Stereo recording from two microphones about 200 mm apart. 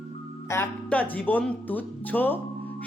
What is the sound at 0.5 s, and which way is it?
Speech, 10° left (ahead or behind).